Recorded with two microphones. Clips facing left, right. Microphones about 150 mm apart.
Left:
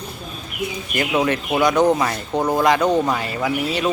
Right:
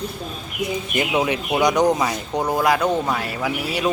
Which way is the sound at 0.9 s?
20° right (ahead or behind).